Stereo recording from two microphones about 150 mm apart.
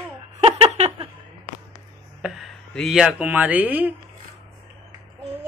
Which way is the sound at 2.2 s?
Centre (ahead or behind).